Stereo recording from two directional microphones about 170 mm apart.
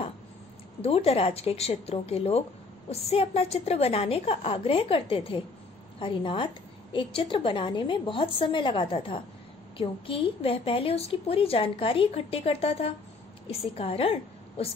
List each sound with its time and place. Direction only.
0.8 s a woman's voice: 35° left (ahead or behind)